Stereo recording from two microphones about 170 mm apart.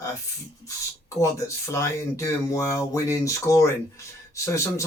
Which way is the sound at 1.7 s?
20° left (ahead or behind).